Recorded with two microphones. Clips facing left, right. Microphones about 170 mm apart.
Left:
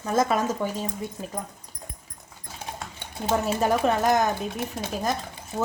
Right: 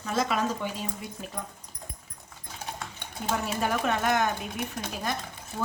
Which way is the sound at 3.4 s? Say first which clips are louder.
Left 6 dB; 35° left (ahead or behind).